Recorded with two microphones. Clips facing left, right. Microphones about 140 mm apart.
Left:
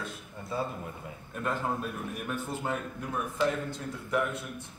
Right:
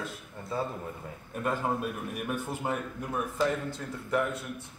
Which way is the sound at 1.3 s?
5° right (ahead or behind).